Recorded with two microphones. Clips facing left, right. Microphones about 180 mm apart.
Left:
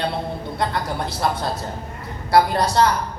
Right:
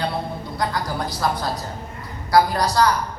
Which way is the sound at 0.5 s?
25° left (ahead or behind).